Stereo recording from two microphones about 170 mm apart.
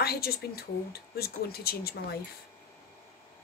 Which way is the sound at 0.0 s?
65° left (ahead or behind).